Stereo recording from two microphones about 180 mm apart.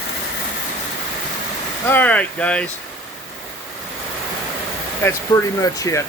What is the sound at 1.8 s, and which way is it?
Speech, 10° left (ahead or behind).